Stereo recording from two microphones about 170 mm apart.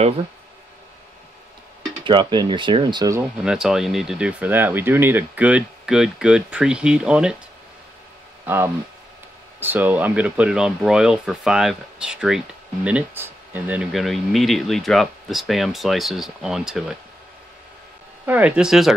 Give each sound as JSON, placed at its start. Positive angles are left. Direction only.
{"t": 2.0, "sound": "speech", "side_deg": -30}
{"t": 3.2, "sound": "speech", "side_deg": -5}
{"t": 8.5, "sound": "speech", "side_deg": -10}
{"t": 18.2, "sound": "speech", "side_deg": -10}